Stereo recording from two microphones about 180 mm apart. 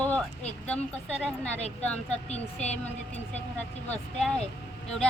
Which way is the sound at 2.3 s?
40° left (ahead or behind).